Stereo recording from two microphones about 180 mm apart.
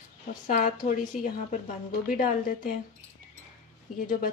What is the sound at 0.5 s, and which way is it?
A woman's voice, 45° left (ahead or behind).